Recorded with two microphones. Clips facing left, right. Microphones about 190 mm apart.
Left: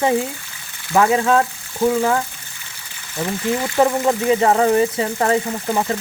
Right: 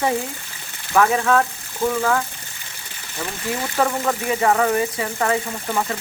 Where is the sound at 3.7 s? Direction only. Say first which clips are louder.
Left 5 dB; 20° left (ahead or behind).